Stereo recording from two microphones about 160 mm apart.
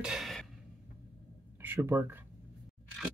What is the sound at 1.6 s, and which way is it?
Speech, 15° right (ahead or behind).